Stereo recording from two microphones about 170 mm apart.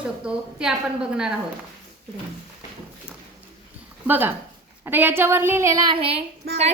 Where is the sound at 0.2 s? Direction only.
5° right (ahead or behind).